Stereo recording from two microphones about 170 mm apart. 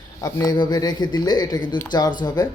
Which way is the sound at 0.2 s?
20° left (ahead or behind).